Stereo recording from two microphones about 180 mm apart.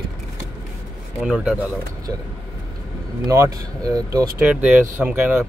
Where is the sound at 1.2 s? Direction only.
5° right (ahead or behind).